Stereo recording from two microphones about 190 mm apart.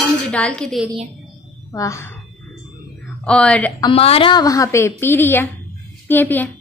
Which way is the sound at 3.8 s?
30° left (ahead or behind).